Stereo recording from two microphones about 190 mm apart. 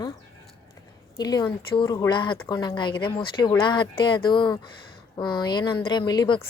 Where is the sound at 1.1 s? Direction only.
20° left (ahead or behind).